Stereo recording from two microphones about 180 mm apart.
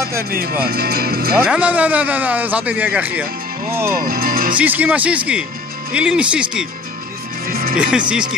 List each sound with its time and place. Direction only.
0.2 s speech: 55° right (ahead or behind)
1.4 s a man's voice: 5° right (ahead or behind)
3.9 s music: 50° right (ahead or behind)
4.6 s a man's voice: 10° right (ahead or behind)
7.4 s music: 55° right (ahead or behind)
7.7 s speech: 5° right (ahead or behind)